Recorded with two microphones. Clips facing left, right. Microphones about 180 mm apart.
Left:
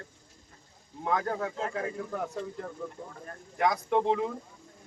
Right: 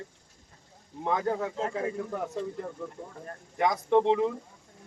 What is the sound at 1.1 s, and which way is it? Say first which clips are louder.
Speech: right 1 dB; 20° right (ahead or behind).